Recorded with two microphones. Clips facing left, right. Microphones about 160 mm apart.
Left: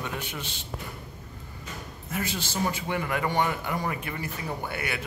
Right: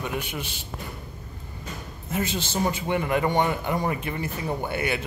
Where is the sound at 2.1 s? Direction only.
25° right (ahead or behind).